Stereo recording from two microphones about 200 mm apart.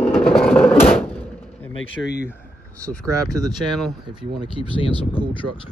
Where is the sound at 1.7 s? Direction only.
75° left (ahead or behind).